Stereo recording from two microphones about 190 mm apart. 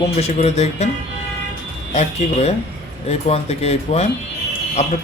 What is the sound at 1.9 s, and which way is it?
Speech, 35° left (ahead or behind).